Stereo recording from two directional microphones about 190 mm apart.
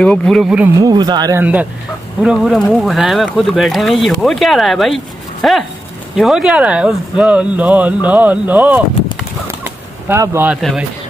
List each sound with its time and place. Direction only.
0.0 s speech: 5° left (ahead or behind)
0.7 s speech: 20° right (ahead or behind)
1.4 s speech: 10° right (ahead or behind)
10.0 s speech: 15° right (ahead or behind)